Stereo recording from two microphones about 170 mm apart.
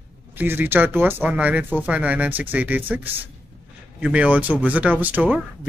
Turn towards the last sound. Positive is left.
turn(degrees=-10)  # may be behind; listen again after turning